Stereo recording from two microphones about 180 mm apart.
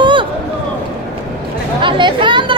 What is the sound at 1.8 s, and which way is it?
Chatter, 25° right (ahead or behind).